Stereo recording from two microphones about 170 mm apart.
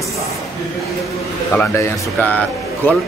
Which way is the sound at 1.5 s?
10° left (ahead or behind).